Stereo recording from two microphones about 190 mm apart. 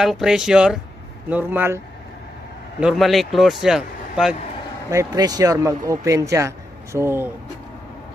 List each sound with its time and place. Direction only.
0.0 s a man's voice: centre (ahead or behind)
2.8 s a man's voice: centre (ahead or behind)
4.9 s speech: 20° right (ahead or behind)